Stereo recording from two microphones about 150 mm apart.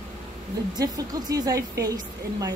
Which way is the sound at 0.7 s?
25° right (ahead or behind).